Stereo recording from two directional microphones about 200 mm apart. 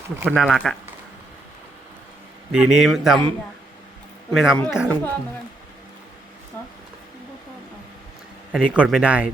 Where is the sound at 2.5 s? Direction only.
5° right (ahead or behind).